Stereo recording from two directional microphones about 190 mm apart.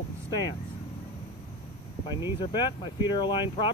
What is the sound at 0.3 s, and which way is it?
Speech, 20° left (ahead or behind).